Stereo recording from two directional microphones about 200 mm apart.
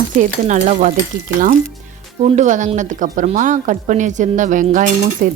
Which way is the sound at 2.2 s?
35° right (ahead or behind).